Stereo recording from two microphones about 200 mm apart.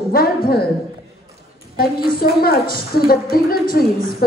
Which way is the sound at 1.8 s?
50° left (ahead or behind).